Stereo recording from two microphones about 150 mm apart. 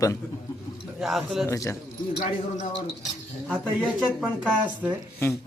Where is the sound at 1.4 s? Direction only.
20° left (ahead or behind).